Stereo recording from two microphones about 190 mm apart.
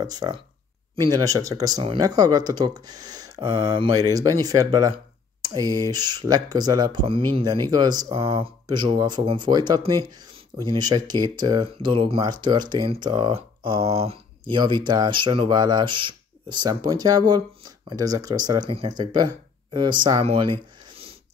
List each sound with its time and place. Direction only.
0.0 s speech: 20° right (ahead or behind)